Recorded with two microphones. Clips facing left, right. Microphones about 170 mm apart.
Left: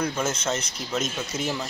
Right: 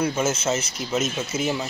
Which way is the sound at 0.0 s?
5° right (ahead or behind).